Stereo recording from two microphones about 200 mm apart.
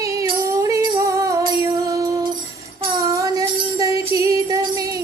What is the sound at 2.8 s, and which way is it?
Jingle bell, 20° right (ahead or behind).